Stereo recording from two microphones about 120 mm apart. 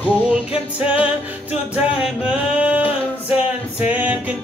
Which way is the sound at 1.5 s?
15° right (ahead or behind).